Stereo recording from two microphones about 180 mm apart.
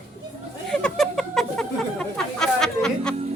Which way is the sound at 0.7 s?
Centre (ahead or behind).